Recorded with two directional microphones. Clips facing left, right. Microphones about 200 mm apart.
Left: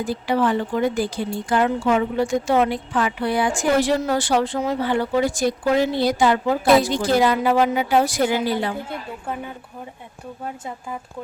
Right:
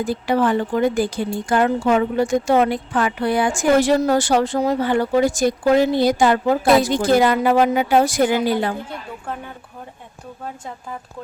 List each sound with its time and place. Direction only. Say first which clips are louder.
0.0 s speech: right 2 dB; 45° right (ahead or behind)